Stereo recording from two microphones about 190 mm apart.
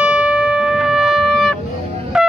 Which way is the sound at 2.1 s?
5° right (ahead or behind).